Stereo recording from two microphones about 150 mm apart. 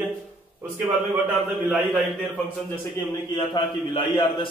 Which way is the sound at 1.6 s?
5° right (ahead or behind).